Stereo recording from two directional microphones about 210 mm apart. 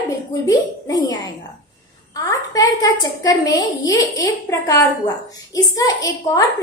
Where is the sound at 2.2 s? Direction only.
15° left (ahead or behind).